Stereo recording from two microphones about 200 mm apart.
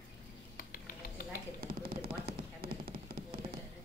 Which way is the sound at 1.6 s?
50° right (ahead or behind).